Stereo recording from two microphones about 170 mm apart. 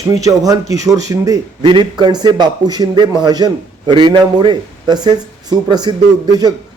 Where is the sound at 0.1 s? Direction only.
20° right (ahead or behind).